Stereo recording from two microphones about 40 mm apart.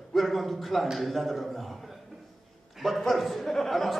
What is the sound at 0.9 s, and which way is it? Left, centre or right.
A man's voice, centre.